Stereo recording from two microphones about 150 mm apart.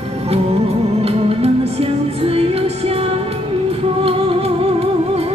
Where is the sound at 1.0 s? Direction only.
40° right (ahead or behind).